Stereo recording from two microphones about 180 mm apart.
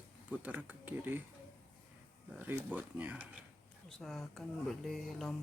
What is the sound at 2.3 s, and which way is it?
Speech, 10° right (ahead or behind).